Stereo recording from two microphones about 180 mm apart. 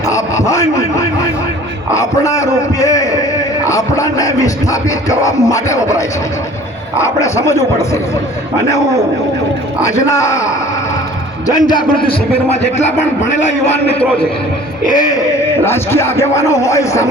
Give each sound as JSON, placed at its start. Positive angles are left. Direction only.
{"t": 0.0, "sound": "a sound", "side_deg": 15}
{"t": 2.0, "sound": "music", "side_deg": 15}
{"t": 9.8, "sound": "music", "side_deg": 15}
{"t": 11.4, "sound": "a man's voice", "side_deg": 20}
{"t": 14.8, "sound": "speech", "side_deg": 20}
{"t": 15.6, "sound": "music", "side_deg": 15}